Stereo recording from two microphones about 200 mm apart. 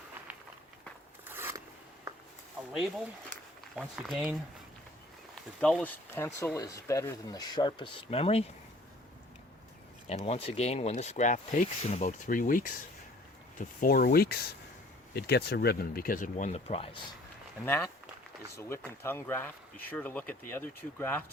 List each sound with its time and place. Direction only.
1.2 s biting: 10° right (ahead or behind)
3.8 s speech: centre (ahead or behind); by 8.4 s 30° left (ahead or behind)
10.1 s speech: 30° left (ahead or behind)
12.0 s speech: 45° left (ahead or behind)
18.5 s speech: 10° left (ahead or behind)